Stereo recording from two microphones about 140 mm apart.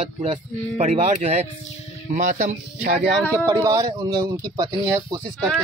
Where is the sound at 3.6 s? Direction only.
25° right (ahead or behind).